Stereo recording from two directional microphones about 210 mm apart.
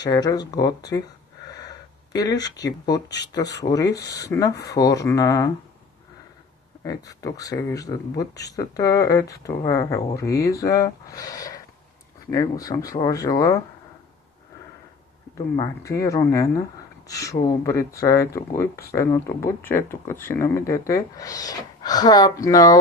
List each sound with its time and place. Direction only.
0.0 s speech: 20° left (ahead or behind)
6.8 s speech: 15° left (ahead or behind)
15.3 s speech: 20° left (ahead or behind)